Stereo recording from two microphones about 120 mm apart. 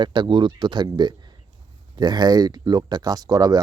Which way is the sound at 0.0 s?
40° right (ahead or behind).